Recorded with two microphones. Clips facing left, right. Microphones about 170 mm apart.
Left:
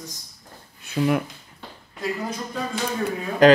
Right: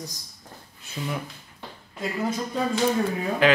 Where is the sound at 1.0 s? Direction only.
90° left.